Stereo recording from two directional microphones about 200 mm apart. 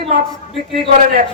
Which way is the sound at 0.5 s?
25° right (ahead or behind).